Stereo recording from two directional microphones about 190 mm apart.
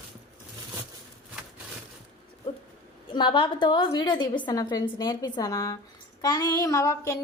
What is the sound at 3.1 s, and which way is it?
A woman's voice, 25° left (ahead or behind).